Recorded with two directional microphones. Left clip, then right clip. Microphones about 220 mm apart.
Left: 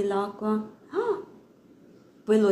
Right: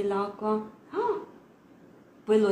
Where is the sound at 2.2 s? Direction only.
10° left (ahead or behind).